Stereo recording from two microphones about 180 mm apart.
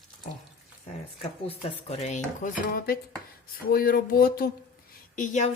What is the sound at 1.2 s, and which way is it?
Speech, 35° left (ahead or behind).